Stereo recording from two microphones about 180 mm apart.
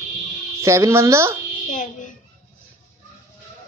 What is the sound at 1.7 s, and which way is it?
Speech, 45° left (ahead or behind).